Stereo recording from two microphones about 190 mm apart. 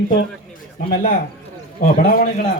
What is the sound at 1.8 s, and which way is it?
Speech, 45° left (ahead or behind).